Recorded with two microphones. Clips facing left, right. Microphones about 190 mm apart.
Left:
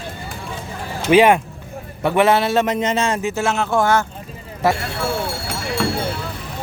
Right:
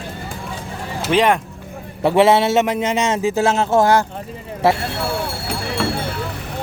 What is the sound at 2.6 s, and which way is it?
Speech, 10° right (ahead or behind).